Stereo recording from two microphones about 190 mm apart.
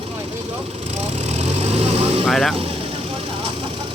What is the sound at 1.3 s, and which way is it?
Vehicle, 35° right (ahead or behind).